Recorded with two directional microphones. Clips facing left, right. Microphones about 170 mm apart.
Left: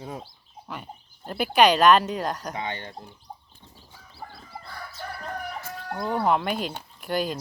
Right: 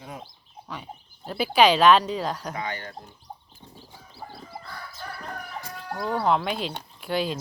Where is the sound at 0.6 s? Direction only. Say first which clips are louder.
Even; centre (ahead or behind).